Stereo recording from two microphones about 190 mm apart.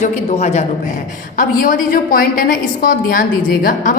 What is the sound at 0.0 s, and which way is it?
A man's voice, 35° left (ahead or behind).